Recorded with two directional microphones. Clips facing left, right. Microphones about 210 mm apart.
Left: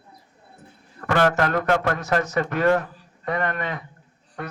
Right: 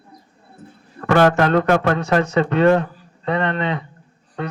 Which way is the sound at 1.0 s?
40° right (ahead or behind).